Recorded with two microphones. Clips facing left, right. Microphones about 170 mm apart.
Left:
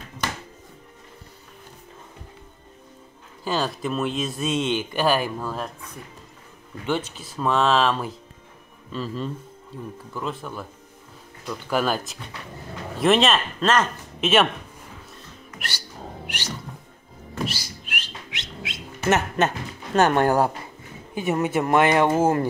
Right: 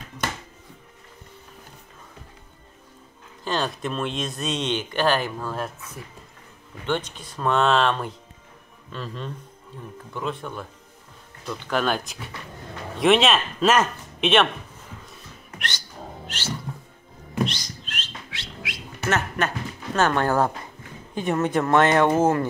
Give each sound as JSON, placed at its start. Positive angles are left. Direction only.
{"t": 3.4, "sound": "speech", "side_deg": 5}
{"t": 6.9, "sound": "speech", "side_deg": 5}
{"t": 14.2, "sound": "speech", "side_deg": 5}
{"t": 16.3, "sound": "music", "side_deg": 15}
{"t": 17.5, "sound": "bird", "side_deg": 10}
{"t": 21.1, "sound": "speech", "side_deg": 10}